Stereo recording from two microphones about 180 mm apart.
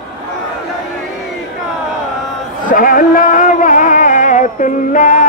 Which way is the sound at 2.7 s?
50° left (ahead or behind).